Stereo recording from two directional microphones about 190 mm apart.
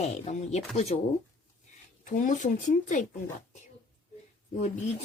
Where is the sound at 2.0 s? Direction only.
40° left (ahead or behind).